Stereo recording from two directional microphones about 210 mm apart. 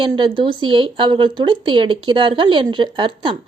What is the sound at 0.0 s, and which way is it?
Speech, 25° right (ahead or behind).